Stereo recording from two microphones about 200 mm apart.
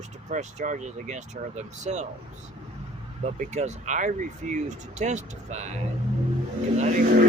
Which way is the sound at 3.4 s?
35° right (ahead or behind).